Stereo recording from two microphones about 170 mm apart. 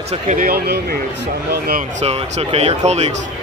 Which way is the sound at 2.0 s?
35° right (ahead or behind).